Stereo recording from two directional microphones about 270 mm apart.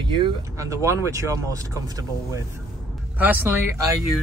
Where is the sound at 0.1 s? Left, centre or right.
Centre.